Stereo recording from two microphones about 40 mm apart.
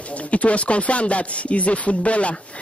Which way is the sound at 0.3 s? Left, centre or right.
Left.